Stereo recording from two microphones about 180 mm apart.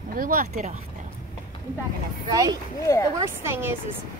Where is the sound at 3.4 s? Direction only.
15° right (ahead or behind).